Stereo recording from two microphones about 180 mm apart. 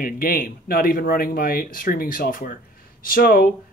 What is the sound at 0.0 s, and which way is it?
Speech, 50° left (ahead or behind).